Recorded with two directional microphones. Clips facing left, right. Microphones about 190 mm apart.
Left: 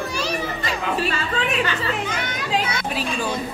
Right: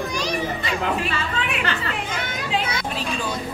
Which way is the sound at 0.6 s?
40° left (ahead or behind).